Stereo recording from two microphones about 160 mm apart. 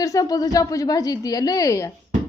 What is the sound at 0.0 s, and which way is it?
A woman's voice, 20° left (ahead or behind).